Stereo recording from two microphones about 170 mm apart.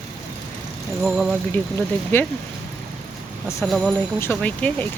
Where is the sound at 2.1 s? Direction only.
10° left (ahead or behind).